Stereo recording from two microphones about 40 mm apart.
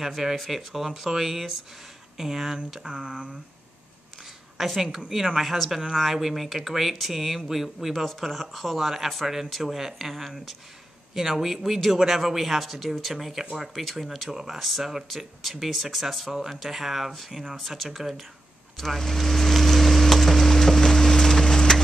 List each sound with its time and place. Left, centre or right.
0.0 s speech: centre
4.6 s a woman's voice: centre
17.6 s speech: centre
18.9 s wood: centre